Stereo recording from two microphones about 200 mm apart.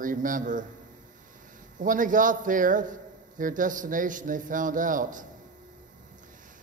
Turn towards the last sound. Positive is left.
turn(degrees=-40)  # may be behind; listen again after turning